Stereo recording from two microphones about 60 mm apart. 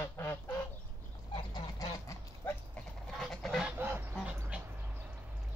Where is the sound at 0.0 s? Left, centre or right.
Left.